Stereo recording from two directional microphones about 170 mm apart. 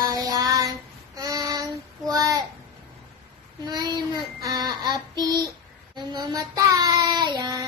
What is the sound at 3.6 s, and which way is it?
Child singing, 25° right (ahead or behind).